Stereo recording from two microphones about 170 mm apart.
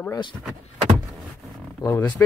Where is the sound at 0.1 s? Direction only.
25° left (ahead or behind).